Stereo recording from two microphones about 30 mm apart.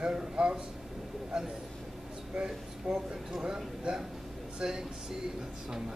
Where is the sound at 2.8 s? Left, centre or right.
Right.